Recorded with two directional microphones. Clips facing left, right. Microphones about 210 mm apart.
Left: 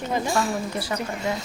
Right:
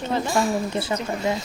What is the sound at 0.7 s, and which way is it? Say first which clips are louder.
Speech: right 3 dB; 25° right (ahead or behind).